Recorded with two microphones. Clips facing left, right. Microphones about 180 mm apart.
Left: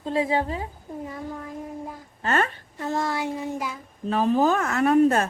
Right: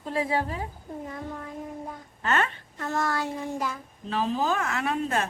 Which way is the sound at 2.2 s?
40° left (ahead or behind).